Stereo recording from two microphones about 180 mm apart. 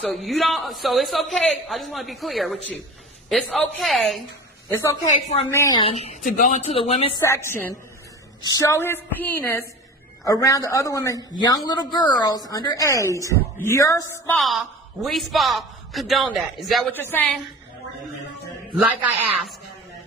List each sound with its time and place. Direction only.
0.0 s a woman's voice: centre (ahead or behind)
5.1 s a woman's voice: 35° left (ahead or behind)
5.5 s a woman's voice: 15° left (ahead or behind)
5.8 s a woman's voice: 35° left (ahead or behind)
6.2 s speech: 50° left (ahead or behind)
6.6 s a woman's voice: 35° left (ahead or behind)
7.2 s a woman's voice: 15° left (ahead or behind)
14.4 s a woman's voice: centre (ahead or behind)
16.9 s a woman's voice: 10° left (ahead or behind)